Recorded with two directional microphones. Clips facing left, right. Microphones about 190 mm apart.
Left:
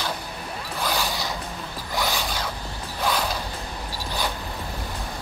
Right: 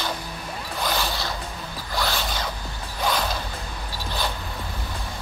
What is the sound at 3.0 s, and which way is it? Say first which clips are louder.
Mechanisms: even; 10° left (ahead or behind).